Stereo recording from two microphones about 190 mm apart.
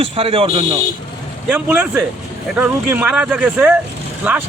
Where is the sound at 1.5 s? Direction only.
10° right (ahead or behind).